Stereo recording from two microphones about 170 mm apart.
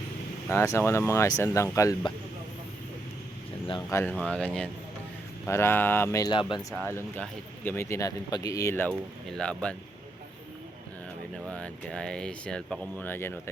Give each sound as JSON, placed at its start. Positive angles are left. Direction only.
{"t": 0.5, "sound": "speech", "side_deg": 15}
{"t": 3.7, "sound": "speech", "side_deg": 20}
{"t": 4.1, "sound": "speech", "side_deg": 5}
{"t": 6.9, "sound": "speech", "side_deg": 10}
{"t": 11.4, "sound": "speech", "side_deg": 5}